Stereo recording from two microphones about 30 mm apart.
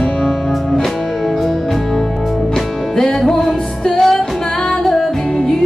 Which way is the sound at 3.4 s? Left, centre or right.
Centre.